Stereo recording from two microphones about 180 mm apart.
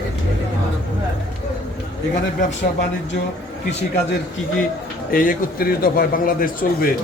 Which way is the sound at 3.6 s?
70° left (ahead or behind).